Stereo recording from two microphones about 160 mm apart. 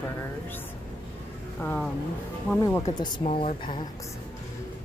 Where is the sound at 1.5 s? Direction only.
5° left (ahead or behind).